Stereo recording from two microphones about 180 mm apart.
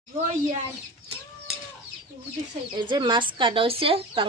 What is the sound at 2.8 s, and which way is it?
Speech, 25° right (ahead or behind).